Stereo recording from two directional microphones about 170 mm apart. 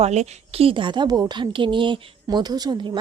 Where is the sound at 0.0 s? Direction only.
40° right (ahead or behind).